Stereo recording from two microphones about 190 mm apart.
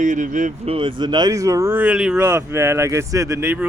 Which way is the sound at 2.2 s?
15° right (ahead or behind).